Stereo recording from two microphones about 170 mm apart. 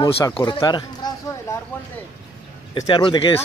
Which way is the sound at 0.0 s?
20° left (ahead or behind).